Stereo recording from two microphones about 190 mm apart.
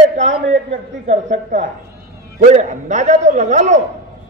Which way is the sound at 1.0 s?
40° right (ahead or behind).